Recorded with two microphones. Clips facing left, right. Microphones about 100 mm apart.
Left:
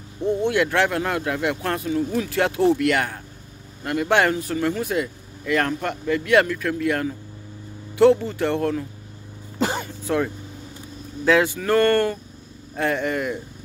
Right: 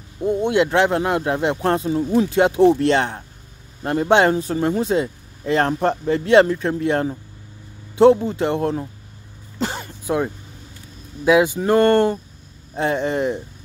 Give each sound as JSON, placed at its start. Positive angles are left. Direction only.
{"t": 0.2, "sound": "speech", "side_deg": -15}
{"t": 9.6, "sound": "throat clearing", "side_deg": 0}
{"t": 10.0, "sound": "speech", "side_deg": -20}